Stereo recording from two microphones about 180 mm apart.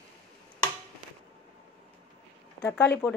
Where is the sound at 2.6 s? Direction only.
10° left (ahead or behind).